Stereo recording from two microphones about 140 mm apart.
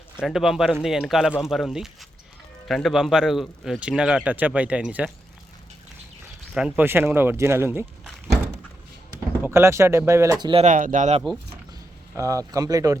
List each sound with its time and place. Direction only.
0.2 s speech: 5° right (ahead or behind)
6.5 s speech: 5° right (ahead or behind)
6.8 s speech: 15° right (ahead or behind)
8.0 s thunk: centre (ahead or behind)
9.4 s speech: 15° right (ahead or behind)
10.4 s speech: 40° right (ahead or behind)
10.7 s speech: 65° right (ahead or behind)
12.1 s speech: 20° right (ahead or behind)